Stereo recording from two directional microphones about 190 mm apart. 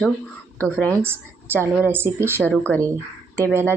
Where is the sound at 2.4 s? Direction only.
5° left (ahead or behind).